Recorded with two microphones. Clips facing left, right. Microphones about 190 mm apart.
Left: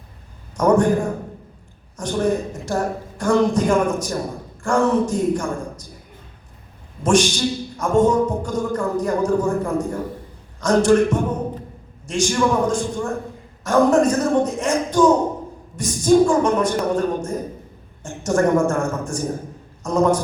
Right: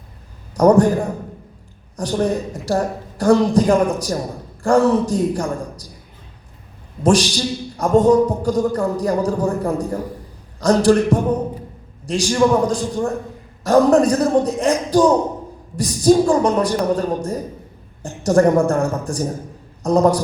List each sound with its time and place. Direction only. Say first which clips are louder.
0.5 s a man's voice: right 4 dB; 35° right (ahead or behind)
2.0 s a man's voice: right 1 dB; 35° right (ahead or behind)
7.0 s a man's voice: right 1 dB; 35° right (ahead or behind)